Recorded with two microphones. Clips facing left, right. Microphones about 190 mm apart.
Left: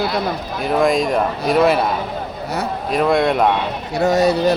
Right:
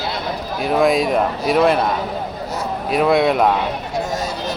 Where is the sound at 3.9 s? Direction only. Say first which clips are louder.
Left 13 dB; 65° left (ahead or behind).